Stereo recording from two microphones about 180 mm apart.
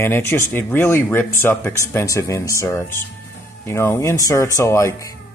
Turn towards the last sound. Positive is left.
turn(degrees=15)  # may be behind; listen again after turning